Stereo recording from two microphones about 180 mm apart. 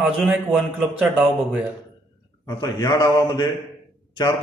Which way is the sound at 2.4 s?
20° left (ahead or behind).